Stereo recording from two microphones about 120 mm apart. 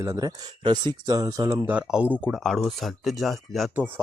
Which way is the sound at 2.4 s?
Centre (ahead or behind).